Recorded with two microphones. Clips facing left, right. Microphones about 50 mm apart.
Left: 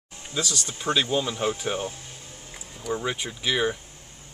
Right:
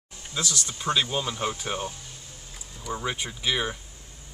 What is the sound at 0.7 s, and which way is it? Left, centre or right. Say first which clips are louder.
Speech: left 2 dB; centre.